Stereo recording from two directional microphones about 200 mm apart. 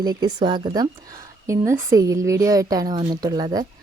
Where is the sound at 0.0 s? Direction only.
20° right (ahead or behind).